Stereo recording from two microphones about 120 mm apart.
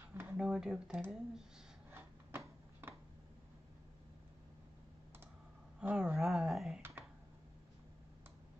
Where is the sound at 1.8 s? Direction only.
20° right (ahead or behind).